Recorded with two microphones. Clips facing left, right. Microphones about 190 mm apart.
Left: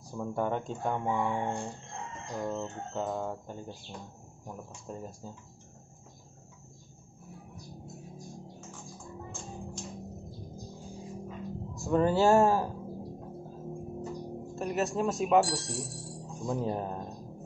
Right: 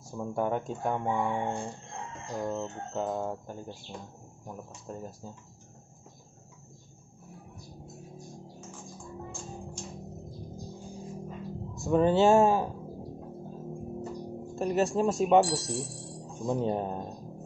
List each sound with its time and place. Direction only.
0.1 s speech: 5° right (ahead or behind)
7.8 s music: centre (ahead or behind)
12.1 s speech: 20° right (ahead or behind)
12.5 s a sound: centre (ahead or behind)